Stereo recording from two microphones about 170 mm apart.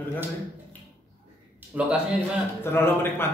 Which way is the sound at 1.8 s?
10° right (ahead or behind).